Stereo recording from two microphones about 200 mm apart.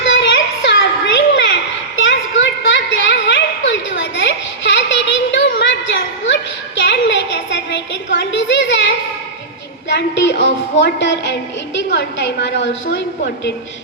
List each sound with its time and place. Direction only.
0.0 s children playing: 65° left (ahead or behind)
2.0 s a sound: 65° left (ahead or behind)
9.9 s a woman's voice: 60° left (ahead or behind)